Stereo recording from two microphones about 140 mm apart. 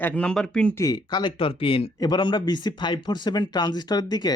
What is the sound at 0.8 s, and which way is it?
A man's voice, 30° left (ahead or behind).